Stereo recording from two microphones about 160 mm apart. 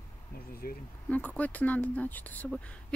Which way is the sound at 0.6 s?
65° left (ahead or behind).